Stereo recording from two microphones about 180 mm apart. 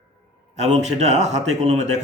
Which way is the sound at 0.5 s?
40° right (ahead or behind).